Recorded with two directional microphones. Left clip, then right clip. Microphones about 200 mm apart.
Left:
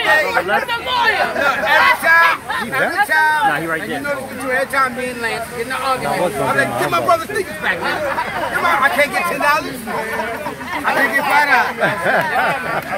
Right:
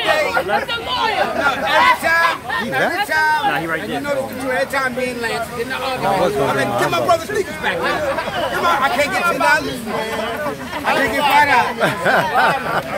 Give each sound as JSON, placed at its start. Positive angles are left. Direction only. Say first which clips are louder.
{"t": 0.3, "sound": "speech", "louder": "left 1 dB", "side_deg": 35}
{"t": 0.9, "sound": "speech", "louder": "left 2 dB", "side_deg": 10}
{"t": 1.7, "sound": "speech", "louder": "left 2 dB", "side_deg": -5}
{"t": 4.5, "sound": "speech", "louder": "left 3 dB", "side_deg": -10}
{"t": 6.4, "sound": "speech", "louder": "left 1 dB", "side_deg": -5}
{"t": 8.6, "sound": "speech", "louder": "left 2 dB", "side_deg": -10}
{"t": 11.0, "sound": "speech", "louder": "right 1 dB", "side_deg": 0}